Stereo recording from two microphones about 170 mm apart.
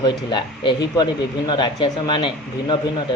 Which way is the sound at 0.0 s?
25° left (ahead or behind).